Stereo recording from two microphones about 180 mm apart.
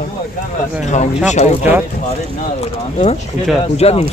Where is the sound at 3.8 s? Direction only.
35° left (ahead or behind).